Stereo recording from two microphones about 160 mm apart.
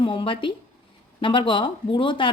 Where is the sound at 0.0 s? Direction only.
30° left (ahead or behind).